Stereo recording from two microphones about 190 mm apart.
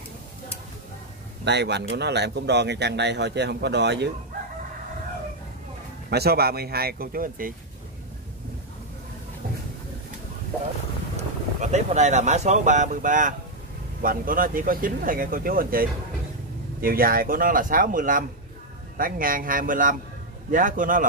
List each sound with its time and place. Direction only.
1.4 s speech: 65° right (ahead or behind)
6.0 s speech: 55° right (ahead or behind)
11.1 s speech: 40° right (ahead or behind)